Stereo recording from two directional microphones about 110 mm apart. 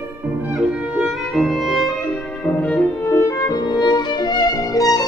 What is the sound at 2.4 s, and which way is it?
Music, 10° left (ahead or behind).